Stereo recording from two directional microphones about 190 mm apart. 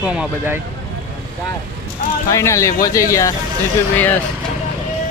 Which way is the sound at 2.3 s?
15° left (ahead or behind).